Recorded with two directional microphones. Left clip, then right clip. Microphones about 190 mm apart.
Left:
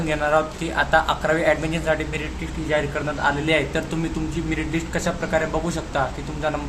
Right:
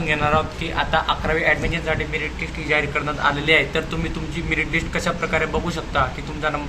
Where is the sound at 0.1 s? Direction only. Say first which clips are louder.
Right 1 dB; 25° left (ahead or behind).